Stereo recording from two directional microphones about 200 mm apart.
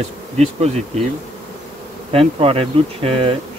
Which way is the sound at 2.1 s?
30° right (ahead or behind).